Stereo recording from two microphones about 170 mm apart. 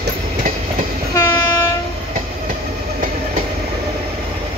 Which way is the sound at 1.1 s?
25° left (ahead or behind).